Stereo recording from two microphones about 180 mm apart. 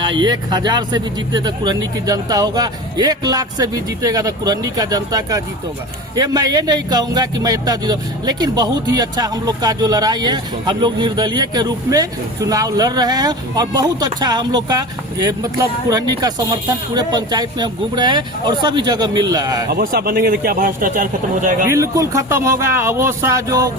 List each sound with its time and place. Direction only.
0.2 s a man's voice: 25° right (ahead or behind)
19.7 s speech: 55° right (ahead or behind)
21.7 s speech: 15° right (ahead or behind)